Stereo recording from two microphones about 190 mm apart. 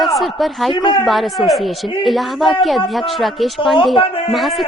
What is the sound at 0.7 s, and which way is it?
Speech, 25° left (ahead or behind).